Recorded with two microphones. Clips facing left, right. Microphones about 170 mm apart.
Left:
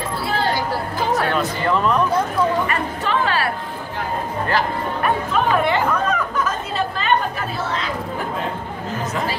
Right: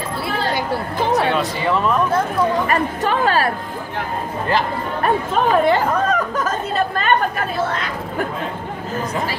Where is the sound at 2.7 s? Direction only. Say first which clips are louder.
Right 3 dB; 45° right (ahead or behind).